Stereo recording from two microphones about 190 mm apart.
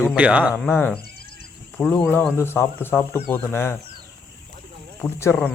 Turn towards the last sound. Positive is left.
turn(degrees=10)  # may be behind; listen again after turning